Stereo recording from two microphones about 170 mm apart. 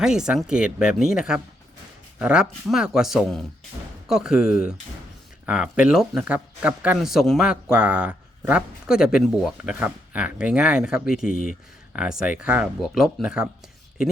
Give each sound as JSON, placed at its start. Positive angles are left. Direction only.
{"t": 0.0, "sound": "speech", "side_deg": -5}
{"t": 11.3, "sound": "speech", "side_deg": 55}
{"t": 11.9, "sound": "speech", "side_deg": -5}